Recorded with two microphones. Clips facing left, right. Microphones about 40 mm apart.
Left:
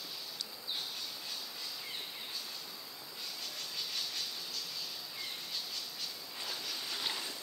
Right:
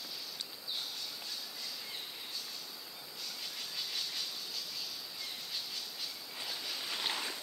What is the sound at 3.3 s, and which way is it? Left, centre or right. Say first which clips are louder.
Vehicle: even; centre.